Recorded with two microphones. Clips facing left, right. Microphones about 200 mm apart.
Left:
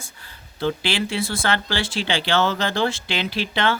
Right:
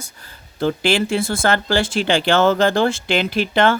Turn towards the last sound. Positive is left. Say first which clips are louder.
# right 6 dB
turn(degrees=-50)  # may be behind; listen again after turning